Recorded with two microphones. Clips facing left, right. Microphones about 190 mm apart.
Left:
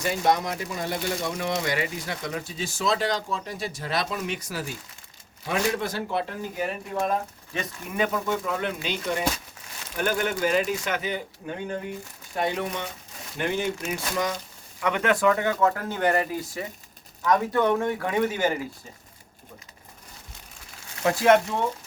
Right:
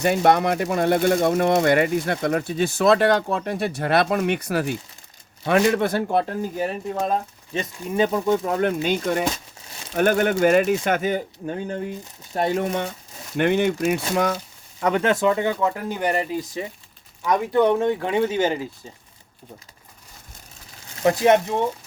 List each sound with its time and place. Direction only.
0.0 s speech: 60° right (ahead or behind)
7.0 s speech: 30° right (ahead or behind); by 12.9 s 50° right (ahead or behind)
13.3 s speech: 60° right (ahead or behind)
14.8 s speech: 35° right (ahead or behind)
15.1 s speech: 25° right (ahead or behind)
21.0 s speech: 20° right (ahead or behind)